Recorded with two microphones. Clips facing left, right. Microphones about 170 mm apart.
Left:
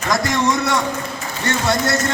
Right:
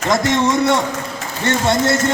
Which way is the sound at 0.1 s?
25° right (ahead or behind).